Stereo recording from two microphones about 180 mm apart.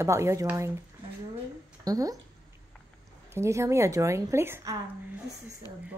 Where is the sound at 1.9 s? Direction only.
20° right (ahead or behind).